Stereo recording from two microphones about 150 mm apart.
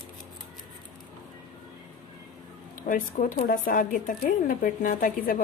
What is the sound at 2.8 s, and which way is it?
Speech, 65° left (ahead or behind).